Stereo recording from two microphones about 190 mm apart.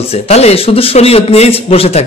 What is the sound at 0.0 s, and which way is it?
A man's voice, 35° left (ahead or behind).